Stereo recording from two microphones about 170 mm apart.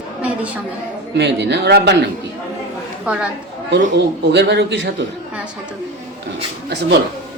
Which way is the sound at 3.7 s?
90° right.